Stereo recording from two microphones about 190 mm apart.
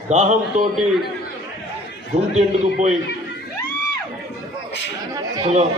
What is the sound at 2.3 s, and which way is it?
Speech, 35° right (ahead or behind).